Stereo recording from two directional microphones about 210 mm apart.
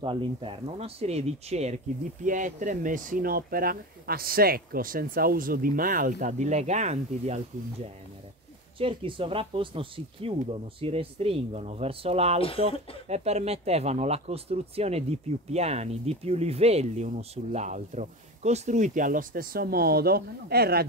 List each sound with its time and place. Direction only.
0.0 s speech: 25° right (ahead or behind)
8.7 s speech: 25° right (ahead or behind)
12.4 s speech: 25° left (ahead or behind)
13.1 s speech: 30° right (ahead or behind); by 20.8 s 50° right (ahead or behind)